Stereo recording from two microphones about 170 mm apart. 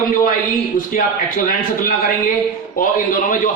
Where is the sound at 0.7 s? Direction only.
55° left (ahead or behind).